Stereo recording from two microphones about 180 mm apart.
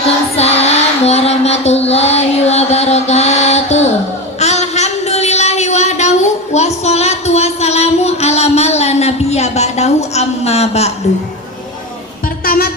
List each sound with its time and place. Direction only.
0.3 s child singing: 35° left (ahead or behind)
4.4 s a sound: 40° left (ahead or behind)
12.5 s music: 55° left (ahead or behind)